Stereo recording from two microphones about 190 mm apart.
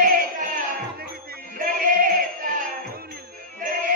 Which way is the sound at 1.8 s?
45° right (ahead or behind).